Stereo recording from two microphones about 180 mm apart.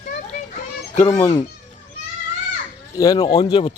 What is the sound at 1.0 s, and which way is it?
Speech, 15° left (ahead or behind).